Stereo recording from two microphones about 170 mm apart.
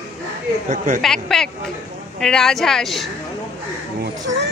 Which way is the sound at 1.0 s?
Centre (ahead or behind).